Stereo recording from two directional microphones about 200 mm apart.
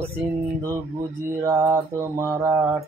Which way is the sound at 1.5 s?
15° right (ahead or behind).